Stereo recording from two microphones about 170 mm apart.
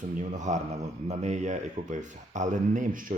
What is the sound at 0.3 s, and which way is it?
Speech, 45° right (ahead or behind).